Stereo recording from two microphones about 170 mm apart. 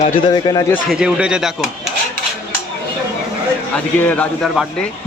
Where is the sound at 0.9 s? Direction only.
5° right (ahead or behind).